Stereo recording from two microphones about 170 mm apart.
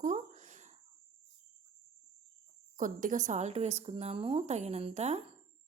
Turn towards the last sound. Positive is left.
turn(degrees=-40)  # may be behind; listen again after turning